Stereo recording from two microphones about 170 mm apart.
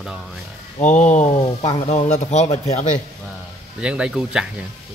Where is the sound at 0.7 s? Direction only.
45° left (ahead or behind).